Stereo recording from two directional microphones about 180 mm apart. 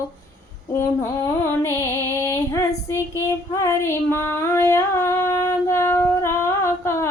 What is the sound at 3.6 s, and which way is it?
Female singing, 15° left (ahead or behind).